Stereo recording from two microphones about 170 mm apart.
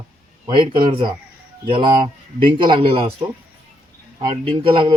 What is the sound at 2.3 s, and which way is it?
Speech, 30° right (ahead or behind).